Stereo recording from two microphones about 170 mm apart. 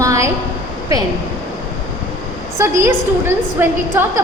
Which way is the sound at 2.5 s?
15° right (ahead or behind).